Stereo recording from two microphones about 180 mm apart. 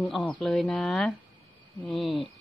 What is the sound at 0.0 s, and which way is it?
A woman's voice, 10° left (ahead or behind).